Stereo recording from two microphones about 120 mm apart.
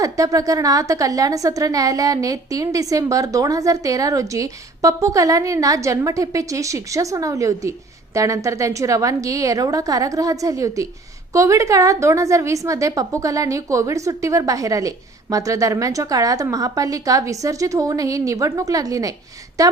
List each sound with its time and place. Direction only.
0.0 s a woman's voice: 30° right (ahead or behind)